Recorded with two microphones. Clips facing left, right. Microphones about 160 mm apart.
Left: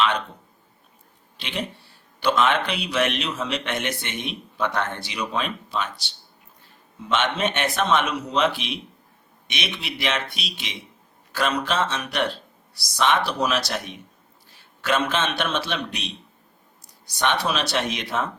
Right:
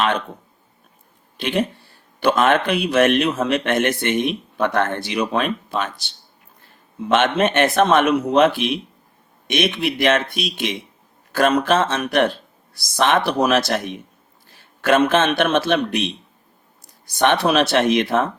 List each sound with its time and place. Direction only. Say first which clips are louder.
1.4 s speech: right 9 dB; 50° right (ahead or behind)
7.1 s speech: right 6 dB; 50° right (ahead or behind)